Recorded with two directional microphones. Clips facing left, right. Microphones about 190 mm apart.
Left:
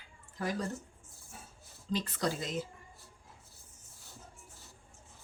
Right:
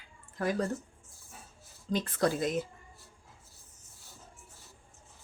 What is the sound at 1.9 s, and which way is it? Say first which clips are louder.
Speech: right 4 dB; 50° right (ahead or behind).